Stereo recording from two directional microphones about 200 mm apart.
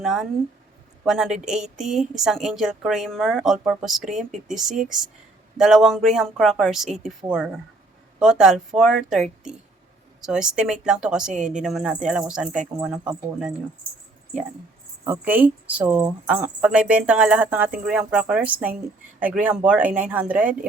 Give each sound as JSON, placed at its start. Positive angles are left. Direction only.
{"t": 0.0, "sound": "speech", "side_deg": 0}
{"t": 11.3, "sound": "a woman's voice", "side_deg": -40}
{"t": 11.6, "sound": "speech", "side_deg": 0}
{"t": 15.0, "sound": "speech", "side_deg": -10}